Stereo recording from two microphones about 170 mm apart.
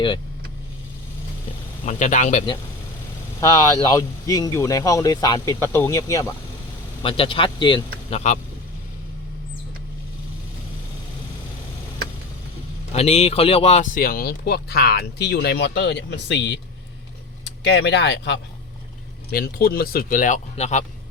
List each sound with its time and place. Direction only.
1.8 s a man's voice: 45° left (ahead or behind)
3.8 s speech: 20° left (ahead or behind)
7.0 s speech: 30° left (ahead or behind)
12.9 s speech: 40° left (ahead or behind); by 18.3 s 90° left
19.3 s speech: 65° left (ahead or behind); by 20.8 s 45° left (ahead or behind)